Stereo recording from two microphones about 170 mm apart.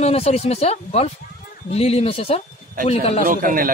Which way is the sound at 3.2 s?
55° right (ahead or behind).